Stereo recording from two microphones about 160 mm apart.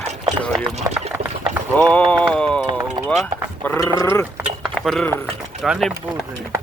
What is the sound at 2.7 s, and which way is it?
Clip-clop, 30° right (ahead or behind).